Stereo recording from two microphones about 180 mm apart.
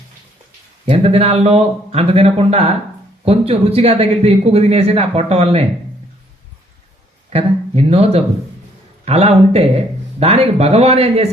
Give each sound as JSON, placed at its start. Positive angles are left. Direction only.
{"t": 0.9, "sound": "speech", "side_deg": -35}
{"t": 7.3, "sound": "speech", "side_deg": -35}